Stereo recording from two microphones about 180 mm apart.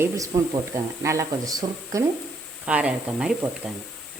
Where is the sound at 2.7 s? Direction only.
5° right (ahead or behind).